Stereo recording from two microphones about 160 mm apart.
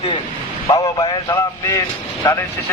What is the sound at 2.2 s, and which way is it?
Speech, 20° left (ahead or behind).